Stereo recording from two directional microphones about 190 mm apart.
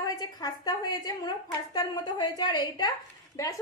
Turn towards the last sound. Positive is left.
turn(degrees=20)  # may be behind; listen again after turning